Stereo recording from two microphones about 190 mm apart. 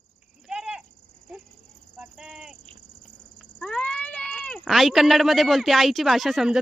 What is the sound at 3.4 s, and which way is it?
Speech, 5° left (ahead or behind).